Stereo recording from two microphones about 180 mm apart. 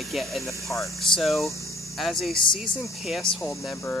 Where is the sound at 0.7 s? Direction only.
15° left (ahead or behind).